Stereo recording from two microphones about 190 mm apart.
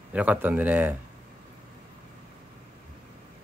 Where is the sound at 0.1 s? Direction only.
5° right (ahead or behind).